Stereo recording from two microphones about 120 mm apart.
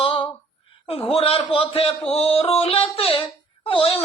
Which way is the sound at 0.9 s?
50° left (ahead or behind).